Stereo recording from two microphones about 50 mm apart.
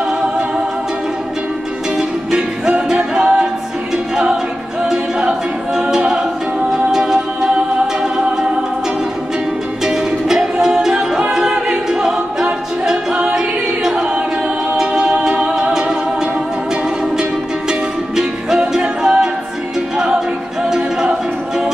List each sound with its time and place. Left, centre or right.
2.0 s music: centre
5.8 s a capella: centre
6.7 s music: centre
9.8 s music: centre
17.2 s music: centre
18.8 s a capella: centre
20.6 s music: centre